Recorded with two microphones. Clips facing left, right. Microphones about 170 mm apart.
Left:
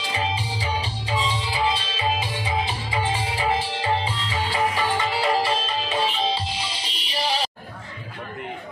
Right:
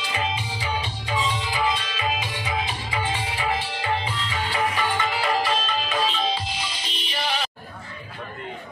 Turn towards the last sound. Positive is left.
turn(degrees=35)  # may be behind; listen again after turning